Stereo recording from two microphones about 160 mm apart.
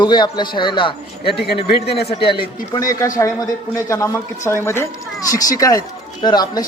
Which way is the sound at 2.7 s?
20° left (ahead or behind).